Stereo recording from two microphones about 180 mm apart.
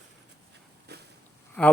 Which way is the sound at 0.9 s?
65° right (ahead or behind).